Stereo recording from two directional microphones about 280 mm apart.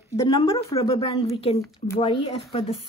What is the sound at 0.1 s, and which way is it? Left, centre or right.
A woman's voice, centre.